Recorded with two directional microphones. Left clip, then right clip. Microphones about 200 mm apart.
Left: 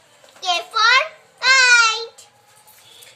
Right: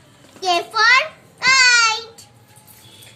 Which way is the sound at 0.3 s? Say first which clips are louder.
Right 2 dB; 15° left (ahead or behind).